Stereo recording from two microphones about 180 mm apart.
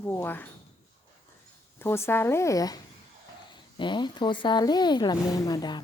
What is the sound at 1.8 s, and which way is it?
A woman's voice, 15° left (ahead or behind).